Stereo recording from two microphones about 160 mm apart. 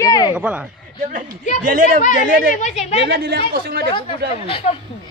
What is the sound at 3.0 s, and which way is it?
Speech, 85° right.